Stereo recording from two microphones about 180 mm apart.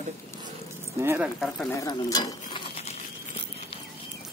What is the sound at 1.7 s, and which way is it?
Speech, 20° left (ahead or behind).